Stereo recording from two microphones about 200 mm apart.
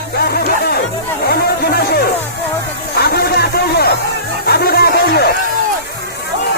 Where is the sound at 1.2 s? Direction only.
50° left (ahead or behind).